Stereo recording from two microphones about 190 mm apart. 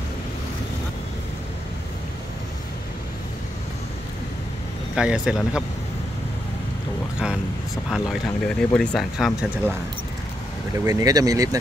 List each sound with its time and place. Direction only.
4.9 s speech: 5° right (ahead or behind)
7.9 s speech: centre (ahead or behind)
10.9 s speech: 20° right (ahead or behind)